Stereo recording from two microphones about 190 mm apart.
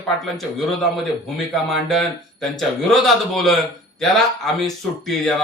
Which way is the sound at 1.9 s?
Centre (ahead or behind).